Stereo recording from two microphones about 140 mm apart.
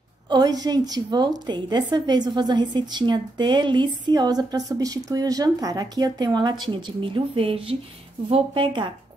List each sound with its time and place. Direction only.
0.3 s a woman's voice: 30° right (ahead or behind)